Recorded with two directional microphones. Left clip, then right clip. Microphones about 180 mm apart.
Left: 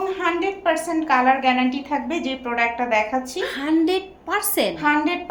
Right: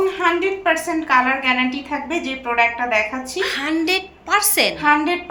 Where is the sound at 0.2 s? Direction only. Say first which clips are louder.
Right 4 dB; 45° left (ahead or behind).